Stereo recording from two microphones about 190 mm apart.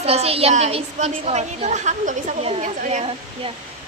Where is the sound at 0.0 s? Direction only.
30° right (ahead or behind).